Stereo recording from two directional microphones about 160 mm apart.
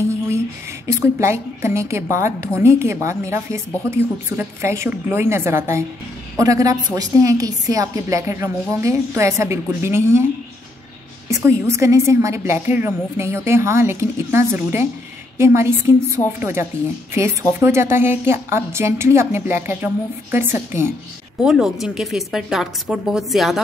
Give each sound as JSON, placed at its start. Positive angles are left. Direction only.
{"t": 0.8, "sound": "a woman's voice", "side_deg": -15}
{"t": 11.2, "sound": "a woman's voice", "side_deg": -20}
{"t": 21.4, "sound": "speech", "side_deg": -5}